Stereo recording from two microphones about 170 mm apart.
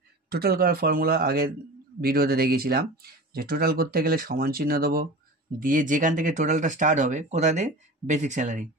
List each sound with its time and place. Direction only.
0.3 s speech: 65° right (ahead or behind); by 8.6 s 45° right (ahead or behind)